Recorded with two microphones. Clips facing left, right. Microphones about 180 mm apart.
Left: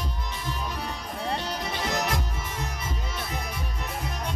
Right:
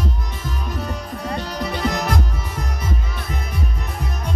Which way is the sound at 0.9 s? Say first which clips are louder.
Right 4 dB; 50° right (ahead or behind).